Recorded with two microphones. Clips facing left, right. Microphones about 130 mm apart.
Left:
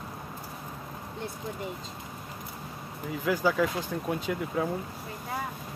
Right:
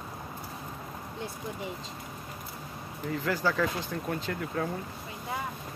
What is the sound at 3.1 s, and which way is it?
Speech, 10° left (ahead or behind).